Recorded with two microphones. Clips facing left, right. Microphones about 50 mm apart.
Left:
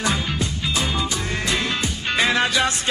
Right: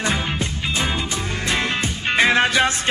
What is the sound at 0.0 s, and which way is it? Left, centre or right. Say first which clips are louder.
Music: right 1 dB; right.